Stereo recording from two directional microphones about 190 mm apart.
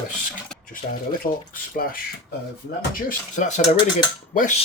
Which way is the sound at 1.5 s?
50° left (ahead or behind).